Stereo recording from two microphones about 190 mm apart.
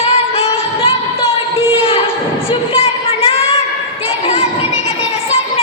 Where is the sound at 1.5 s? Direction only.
30° left (ahead or behind).